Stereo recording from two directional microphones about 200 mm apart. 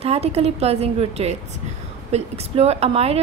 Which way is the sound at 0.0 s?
30° right (ahead or behind).